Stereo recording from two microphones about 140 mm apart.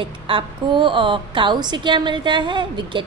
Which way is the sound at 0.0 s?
40° right (ahead or behind).